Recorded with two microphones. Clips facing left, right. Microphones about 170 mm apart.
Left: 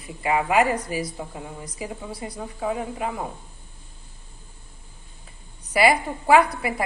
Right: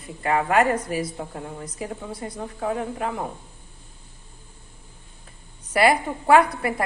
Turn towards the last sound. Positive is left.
turn(degrees=0)  # may be behind; listen again after turning